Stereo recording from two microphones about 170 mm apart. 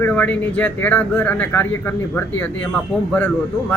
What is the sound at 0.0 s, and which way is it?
Speech, 10° left (ahead or behind).